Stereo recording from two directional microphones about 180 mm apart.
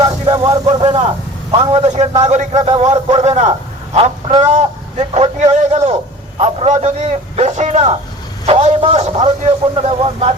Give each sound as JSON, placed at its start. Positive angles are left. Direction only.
{"t": 0.0, "sound": "vehicle", "side_deg": -25}
{"t": 0.8, "sound": "a man's voice", "side_deg": -30}
{"t": 3.9, "sound": "a man's voice", "side_deg": -25}